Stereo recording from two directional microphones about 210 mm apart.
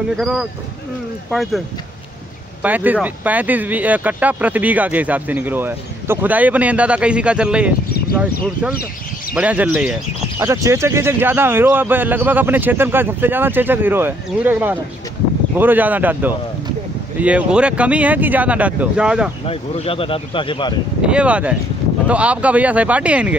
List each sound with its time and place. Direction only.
0.2 s speech: 5° right (ahead or behind)
2.6 s speech: 10° right (ahead or behind)
9.3 s speech: 5° right (ahead or behind)
19.4 s speech: 25° left (ahead or behind)
21.0 s speech: 5° right (ahead or behind)